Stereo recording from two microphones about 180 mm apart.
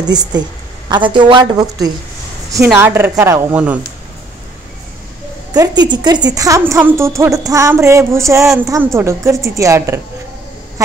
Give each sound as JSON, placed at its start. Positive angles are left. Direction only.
{"t": 0.1, "sound": "a woman's voice", "side_deg": -20}
{"t": 5.5, "sound": "speech", "side_deg": -20}